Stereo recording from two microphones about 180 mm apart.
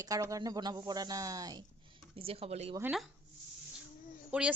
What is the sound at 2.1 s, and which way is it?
Speech, 30° right (ahead or behind).